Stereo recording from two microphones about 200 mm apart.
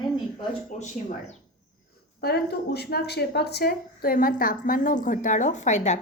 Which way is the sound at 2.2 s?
55° left (ahead or behind).